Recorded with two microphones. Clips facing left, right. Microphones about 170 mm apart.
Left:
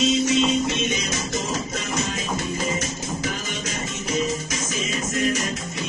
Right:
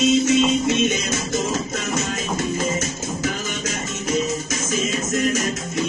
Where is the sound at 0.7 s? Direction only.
50° right (ahead or behind).